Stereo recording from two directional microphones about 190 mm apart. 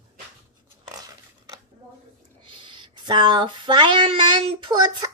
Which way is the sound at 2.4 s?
25° right (ahead or behind).